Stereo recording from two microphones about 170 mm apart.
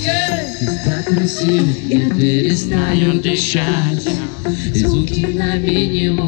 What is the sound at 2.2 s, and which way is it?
Mantra, 10° left (ahead or behind).